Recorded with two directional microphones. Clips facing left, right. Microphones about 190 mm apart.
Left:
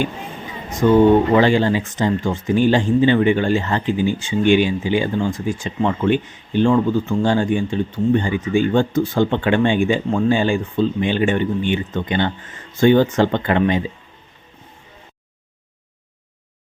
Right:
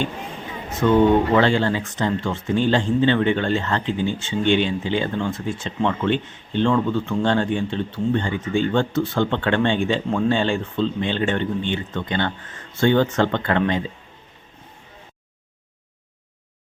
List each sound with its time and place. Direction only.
0.8 s speech: 5° left (ahead or behind)